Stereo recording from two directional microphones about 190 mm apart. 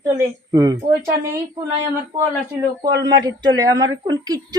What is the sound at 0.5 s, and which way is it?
A woman's voice, 20° right (ahead or behind).